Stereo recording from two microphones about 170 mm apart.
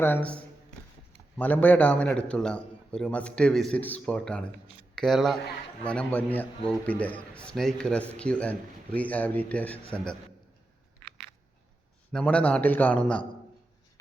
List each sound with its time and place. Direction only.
0.0 s a man's voice: 10° left (ahead or behind)
12.1 s a man's voice: 5° left (ahead or behind)